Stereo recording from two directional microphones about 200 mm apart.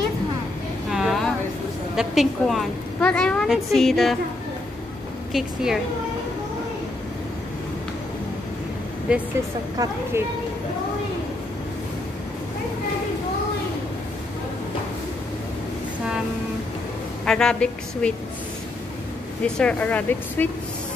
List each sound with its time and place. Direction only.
0.8 s a sound: centre (ahead or behind)
2.0 s a woman's voice: centre (ahead or behind)
5.3 s a woman's voice: centre (ahead or behind)
9.8 s a woman's voice: 20° right (ahead or behind)
17.2 s a woman's voice: 5° left (ahead or behind)
19.4 s speech: 5° left (ahead or behind)